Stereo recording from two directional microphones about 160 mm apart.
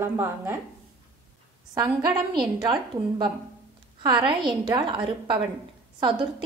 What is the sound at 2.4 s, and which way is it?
A woman's voice, 30° right (ahead or behind).